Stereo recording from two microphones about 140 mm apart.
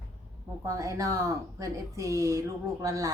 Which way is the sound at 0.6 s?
25° right (ahead or behind).